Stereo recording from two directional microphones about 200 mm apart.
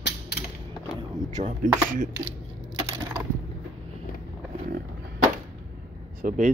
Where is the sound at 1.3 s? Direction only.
40° right (ahead or behind).